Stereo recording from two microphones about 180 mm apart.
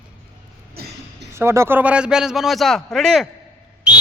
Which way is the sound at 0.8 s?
60° right (ahead or behind).